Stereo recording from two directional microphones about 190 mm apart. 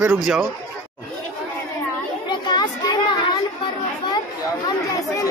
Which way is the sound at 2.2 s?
20° left (ahead or behind).